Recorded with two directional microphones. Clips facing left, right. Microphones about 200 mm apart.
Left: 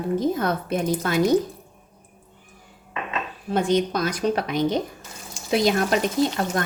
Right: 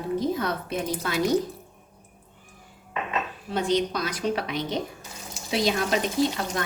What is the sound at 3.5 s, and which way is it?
A woman's voice, 50° left (ahead or behind).